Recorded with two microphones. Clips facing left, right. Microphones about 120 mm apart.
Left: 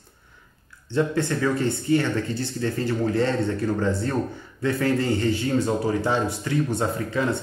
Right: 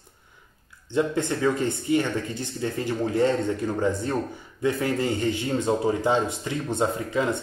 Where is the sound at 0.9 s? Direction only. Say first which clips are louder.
Left 1 dB; 20° right (ahead or behind).